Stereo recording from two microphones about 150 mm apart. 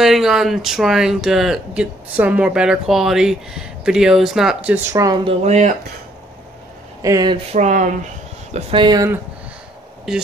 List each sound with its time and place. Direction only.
0.0 s speech: centre (ahead or behind)
4.9 s speech: 25° right (ahead or behind)
5.4 s speech: 45° right (ahead or behind)
7.0 s speech: 25° right (ahead or behind)
7.5 s speech: 55° right (ahead or behind)
8.5 s speech: 45° right (ahead or behind)
8.8 s speech: 25° right (ahead or behind)
10.1 s speech: 5° right (ahead or behind)